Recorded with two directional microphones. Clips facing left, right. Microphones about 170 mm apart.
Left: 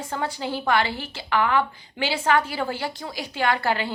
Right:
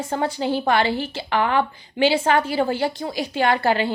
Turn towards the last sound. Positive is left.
turn(degrees=-25)  # may be behind; listen again after turning